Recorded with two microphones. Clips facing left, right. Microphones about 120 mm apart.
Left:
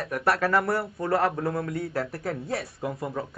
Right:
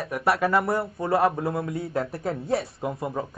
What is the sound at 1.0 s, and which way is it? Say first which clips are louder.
A man's voice: right 2 dB; 25° right (ahead or behind).